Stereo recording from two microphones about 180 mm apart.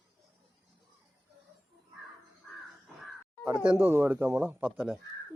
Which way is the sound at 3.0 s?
5° right (ahead or behind).